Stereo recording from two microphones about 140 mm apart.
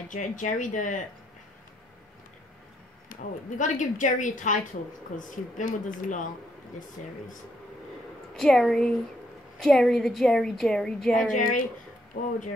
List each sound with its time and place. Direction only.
0.1 s speech: 65° left (ahead or behind)
3.1 s speech: 65° left (ahead or behind)
8.4 s a woman's voice: centre (ahead or behind)
11.3 s speech: 75° left (ahead or behind)
12.1 s speech: 90° left